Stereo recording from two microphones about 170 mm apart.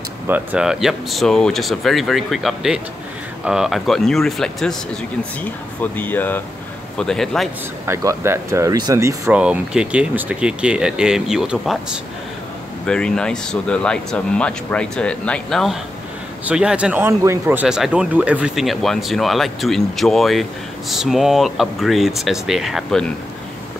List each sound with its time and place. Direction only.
0.3 s speech: 5° right (ahead or behind)
7.8 s speech: 15° right (ahead or behind); by 23.1 s 5° left (ahead or behind)